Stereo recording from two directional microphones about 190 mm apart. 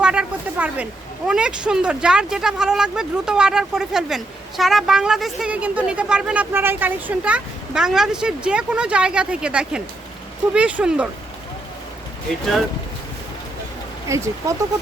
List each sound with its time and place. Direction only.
0.0 s speech: 5° right (ahead or behind)
14.1 s speech: 15° right (ahead or behind)